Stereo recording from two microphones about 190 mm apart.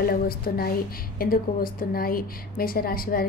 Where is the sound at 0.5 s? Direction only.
50° left (ahead or behind).